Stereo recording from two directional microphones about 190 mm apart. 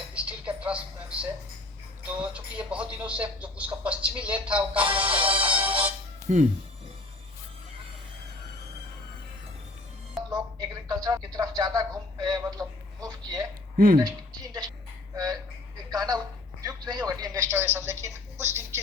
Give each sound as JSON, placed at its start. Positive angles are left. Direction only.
{"t": 0.1, "sound": "music", "side_deg": -5}
{"t": 2.3, "sound": "speech", "side_deg": -5}
{"t": 6.2, "sound": "speech", "side_deg": -40}
{"t": 10.2, "sound": "radio", "side_deg": -20}
{"t": 13.7, "sound": "speech", "side_deg": -50}
{"t": 14.0, "sound": "a sound", "side_deg": -20}